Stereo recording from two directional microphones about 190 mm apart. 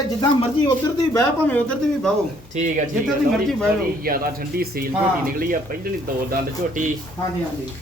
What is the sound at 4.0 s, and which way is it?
Speech, 50° right (ahead or behind).